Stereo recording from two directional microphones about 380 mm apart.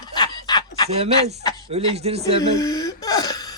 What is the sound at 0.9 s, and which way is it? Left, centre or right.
Speech, centre.